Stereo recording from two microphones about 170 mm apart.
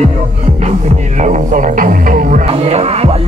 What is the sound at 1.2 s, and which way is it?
Music, 50° right (ahead or behind).